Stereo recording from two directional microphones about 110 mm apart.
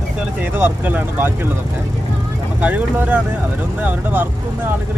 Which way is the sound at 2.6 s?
15° right (ahead or behind).